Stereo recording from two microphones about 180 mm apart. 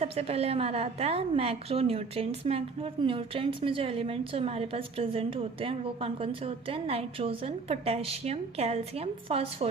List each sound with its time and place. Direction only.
0.0 s a woman's voice: 35° right (ahead or behind)